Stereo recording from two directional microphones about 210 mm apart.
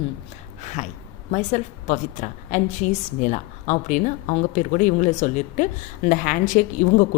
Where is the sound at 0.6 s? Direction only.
35° left (ahead or behind).